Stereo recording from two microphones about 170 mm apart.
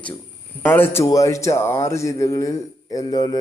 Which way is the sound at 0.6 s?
10° left (ahead or behind).